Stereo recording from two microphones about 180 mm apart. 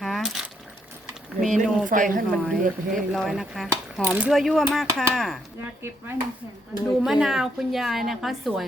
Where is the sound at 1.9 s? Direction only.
50° right (ahead or behind).